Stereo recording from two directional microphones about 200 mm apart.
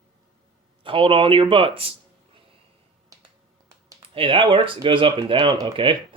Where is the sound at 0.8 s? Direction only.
25° right (ahead or behind).